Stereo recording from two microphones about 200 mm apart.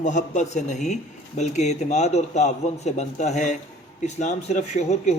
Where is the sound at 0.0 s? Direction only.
35° left (ahead or behind).